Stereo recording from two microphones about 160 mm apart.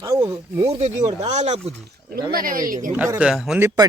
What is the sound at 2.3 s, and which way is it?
Speech, 60° right (ahead or behind).